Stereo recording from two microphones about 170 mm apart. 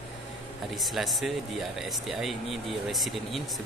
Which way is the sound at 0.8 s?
Centre (ahead or behind).